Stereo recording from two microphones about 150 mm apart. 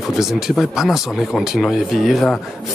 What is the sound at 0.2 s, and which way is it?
Speech, centre (ahead or behind).